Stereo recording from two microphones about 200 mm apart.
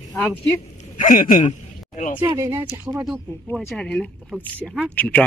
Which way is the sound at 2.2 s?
15° right (ahead or behind).